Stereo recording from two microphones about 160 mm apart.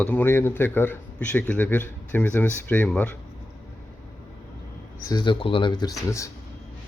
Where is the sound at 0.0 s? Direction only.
10° left (ahead or behind).